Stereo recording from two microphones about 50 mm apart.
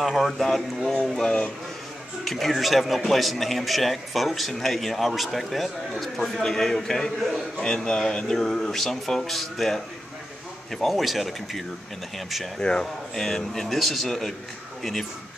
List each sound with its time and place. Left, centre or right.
0.0 s a man's voice: centre
1.2 s speech: left
2.2 s a man's voice: centre
12.5 s a man's voice: centre